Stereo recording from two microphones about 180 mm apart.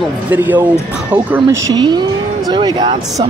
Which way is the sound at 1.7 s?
25° right (ahead or behind).